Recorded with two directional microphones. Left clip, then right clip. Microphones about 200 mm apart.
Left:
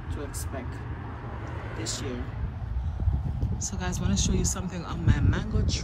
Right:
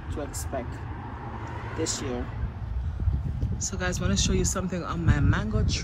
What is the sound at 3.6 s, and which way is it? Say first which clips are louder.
Speech: right 5 dB; 15° left (ahead or behind).